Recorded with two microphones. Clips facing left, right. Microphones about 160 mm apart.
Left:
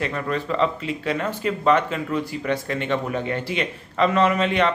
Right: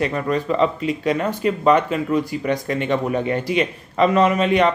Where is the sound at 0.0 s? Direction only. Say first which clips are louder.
Right 4 dB; 15° right (ahead or behind).